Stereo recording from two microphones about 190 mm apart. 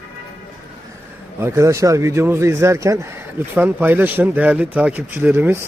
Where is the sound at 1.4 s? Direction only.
15° right (ahead or behind).